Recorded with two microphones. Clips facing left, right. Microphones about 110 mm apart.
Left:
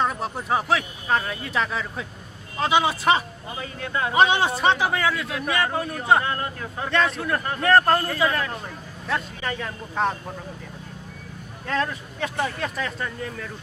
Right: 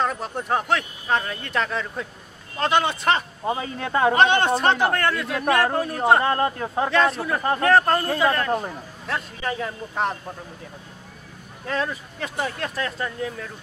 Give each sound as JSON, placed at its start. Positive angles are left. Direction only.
{"t": 0.0, "sound": "speech", "side_deg": 0}
{"t": 3.4, "sound": "speech", "side_deg": -40}
{"t": 4.1, "sound": "speech", "side_deg": 5}
{"t": 5.3, "sound": "speech", "side_deg": -60}
{"t": 5.8, "sound": "speech", "side_deg": 0}
{"t": 6.2, "sound": "speech", "side_deg": -45}
{"t": 6.9, "sound": "speech", "side_deg": 0}
{"t": 11.6, "sound": "speech", "side_deg": -5}